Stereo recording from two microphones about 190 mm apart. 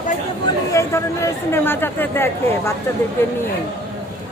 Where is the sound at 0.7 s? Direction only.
15° left (ahead or behind).